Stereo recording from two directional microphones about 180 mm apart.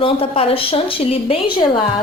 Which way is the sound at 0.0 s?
30° left (ahead or behind).